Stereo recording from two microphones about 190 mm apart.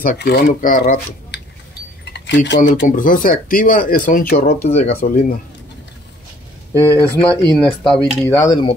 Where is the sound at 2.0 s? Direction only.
65° left (ahead or behind).